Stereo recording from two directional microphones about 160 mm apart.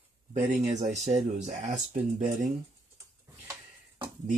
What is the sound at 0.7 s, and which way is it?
Speech, 45° right (ahead or behind).